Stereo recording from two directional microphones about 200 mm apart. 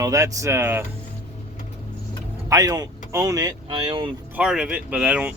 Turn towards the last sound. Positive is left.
turn(degrees=-5)  # may be behind; listen again after turning